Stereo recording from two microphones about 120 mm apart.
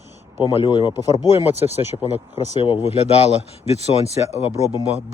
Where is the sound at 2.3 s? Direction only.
45° left (ahead or behind); by 4.6 s 65° left (ahead or behind).